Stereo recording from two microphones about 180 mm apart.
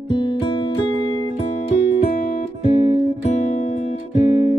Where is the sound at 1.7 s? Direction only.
35° left (ahead or behind).